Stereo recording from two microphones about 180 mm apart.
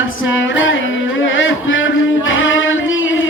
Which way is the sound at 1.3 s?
90° left.